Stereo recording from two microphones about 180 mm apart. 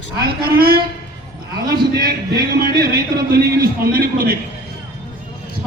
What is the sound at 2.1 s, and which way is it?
Speech, 60° right (ahead or behind).